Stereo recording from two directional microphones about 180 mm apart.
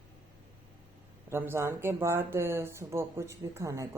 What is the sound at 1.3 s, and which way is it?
A woman's voice, 10° right (ahead or behind).